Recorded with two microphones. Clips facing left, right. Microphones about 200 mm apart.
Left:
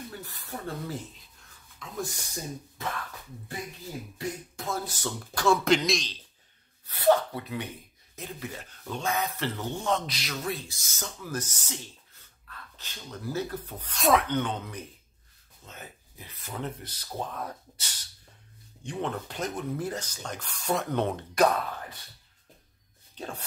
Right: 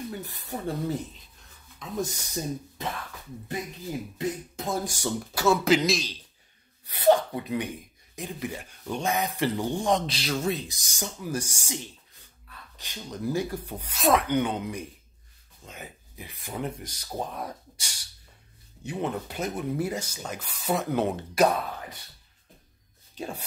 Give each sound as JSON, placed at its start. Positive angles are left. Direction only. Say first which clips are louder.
{"t": 0.1, "sound": "speech", "louder": "right 5 dB", "side_deg": -20}
{"t": 4.6, "sound": "speech", "louder": "right 3 dB", "side_deg": -15}
{"t": 10.0, "sound": "speech", "louder": "right 5 dB", "side_deg": -30}
{"t": 23.1, "sound": "speech", "louder": "right 3 dB", "side_deg": -10}